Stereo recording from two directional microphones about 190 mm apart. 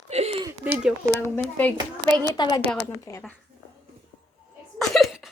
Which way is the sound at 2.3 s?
20° left (ahead or behind).